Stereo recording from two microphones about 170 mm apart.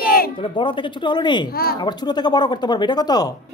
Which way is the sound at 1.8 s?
25° left (ahead or behind).